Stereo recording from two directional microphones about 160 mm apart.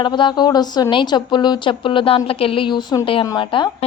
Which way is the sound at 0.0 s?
30° left (ahead or behind).